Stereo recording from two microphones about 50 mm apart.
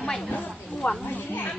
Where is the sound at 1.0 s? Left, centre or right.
Left.